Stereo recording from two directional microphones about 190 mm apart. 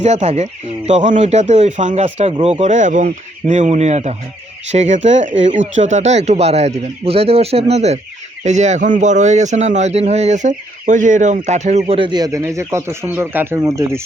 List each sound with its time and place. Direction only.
0.0 s a man's voice: 35° right (ahead or behind); by 14.0 s 15° right (ahead or behind)